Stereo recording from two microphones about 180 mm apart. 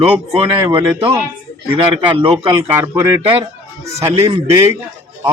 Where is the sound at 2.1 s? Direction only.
25° right (ahead or behind).